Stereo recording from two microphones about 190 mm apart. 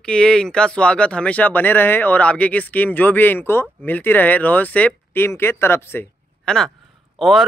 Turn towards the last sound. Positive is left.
turn(degrees=0)  # may be behind; listen again after turning